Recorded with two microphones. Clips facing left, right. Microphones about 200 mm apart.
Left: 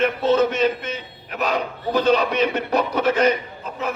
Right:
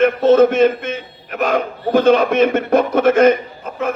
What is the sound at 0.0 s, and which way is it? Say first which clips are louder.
A man's voice: right 7 dB; 50° right (ahead or behind).